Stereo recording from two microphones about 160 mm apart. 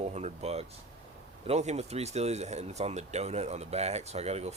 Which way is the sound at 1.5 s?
45° right (ahead or behind).